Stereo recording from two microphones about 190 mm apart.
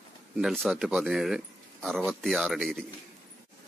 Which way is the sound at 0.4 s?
Centre (ahead or behind).